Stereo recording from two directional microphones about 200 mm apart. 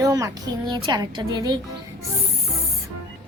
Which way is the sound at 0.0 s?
15° right (ahead or behind).